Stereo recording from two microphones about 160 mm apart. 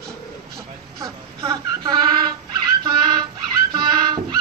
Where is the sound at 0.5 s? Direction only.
20° right (ahead or behind).